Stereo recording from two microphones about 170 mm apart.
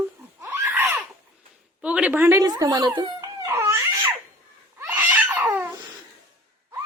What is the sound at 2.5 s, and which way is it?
Speech, 25° right (ahead or behind).